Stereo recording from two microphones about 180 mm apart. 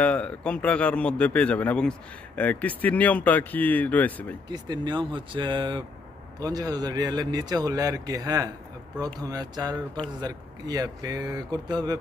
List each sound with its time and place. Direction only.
0.0 s a man's voice: 5° left (ahead or behind)
4.5 s speech: 25° right (ahead or behind)